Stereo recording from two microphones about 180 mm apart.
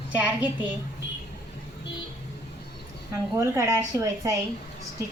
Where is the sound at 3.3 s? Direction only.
15° right (ahead or behind).